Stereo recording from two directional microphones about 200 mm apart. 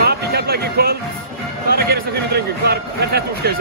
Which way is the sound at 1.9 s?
55° right (ahead or behind).